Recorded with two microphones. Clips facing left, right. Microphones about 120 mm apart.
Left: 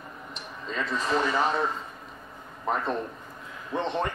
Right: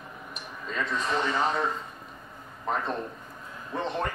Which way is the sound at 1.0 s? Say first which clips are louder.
Left 2 dB; centre (ahead or behind).